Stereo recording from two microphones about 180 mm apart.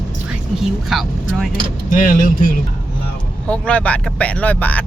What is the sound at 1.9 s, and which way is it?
Speech, 45° left (ahead or behind).